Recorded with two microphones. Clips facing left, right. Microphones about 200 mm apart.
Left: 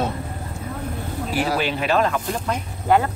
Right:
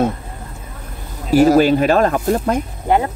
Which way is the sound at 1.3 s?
45° right (ahead or behind).